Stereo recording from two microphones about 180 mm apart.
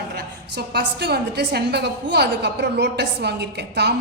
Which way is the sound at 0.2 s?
65° right (ahead or behind).